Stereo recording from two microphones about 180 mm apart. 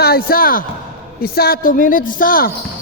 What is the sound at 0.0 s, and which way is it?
A woman's voice, 55° left (ahead or behind).